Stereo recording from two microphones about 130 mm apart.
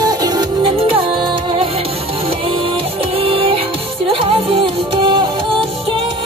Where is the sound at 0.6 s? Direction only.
45° right (ahead or behind).